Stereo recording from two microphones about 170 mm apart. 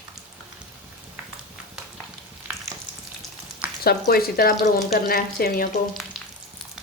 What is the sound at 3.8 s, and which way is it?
A woman's voice, 65° left (ahead or behind).